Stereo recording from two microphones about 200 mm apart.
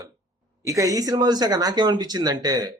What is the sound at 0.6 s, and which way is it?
Speech, 15° right (ahead or behind).